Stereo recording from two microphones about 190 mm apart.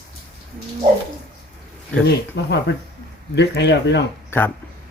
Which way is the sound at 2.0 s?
65° left (ahead or behind).